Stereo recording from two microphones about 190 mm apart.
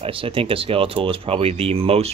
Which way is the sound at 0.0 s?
30° right (ahead or behind).